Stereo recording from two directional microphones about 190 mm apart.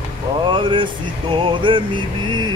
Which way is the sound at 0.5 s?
25° right (ahead or behind).